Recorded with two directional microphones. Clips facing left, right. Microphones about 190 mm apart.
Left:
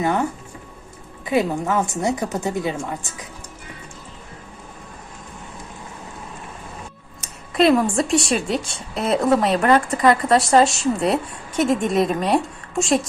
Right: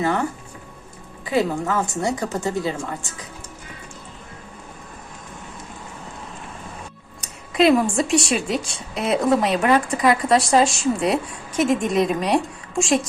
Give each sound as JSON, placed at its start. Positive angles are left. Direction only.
{"t": 0.0, "sound": "a woman's voice", "side_deg": 20}
{"t": 7.5, "sound": "a woman's voice", "side_deg": 0}